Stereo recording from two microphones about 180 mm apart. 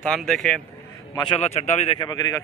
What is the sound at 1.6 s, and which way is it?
Speech, 35° left (ahead or behind).